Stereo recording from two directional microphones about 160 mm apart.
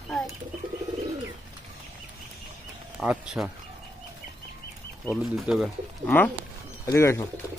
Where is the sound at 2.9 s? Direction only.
5° right (ahead or behind).